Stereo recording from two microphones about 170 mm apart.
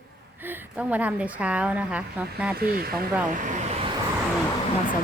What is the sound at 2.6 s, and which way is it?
Speech, 65° right (ahead or behind).